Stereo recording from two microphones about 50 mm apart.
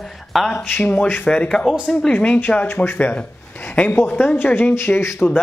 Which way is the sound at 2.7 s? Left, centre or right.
Left.